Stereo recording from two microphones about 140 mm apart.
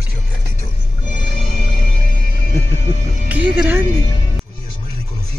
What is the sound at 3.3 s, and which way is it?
Music, 15° right (ahead or behind).